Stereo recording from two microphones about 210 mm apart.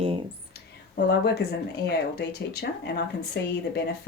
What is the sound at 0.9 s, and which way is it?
Speech, 50° left (ahead or behind).